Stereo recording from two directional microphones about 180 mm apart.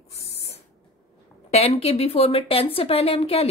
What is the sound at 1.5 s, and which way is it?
Speech, 35° left (ahead or behind).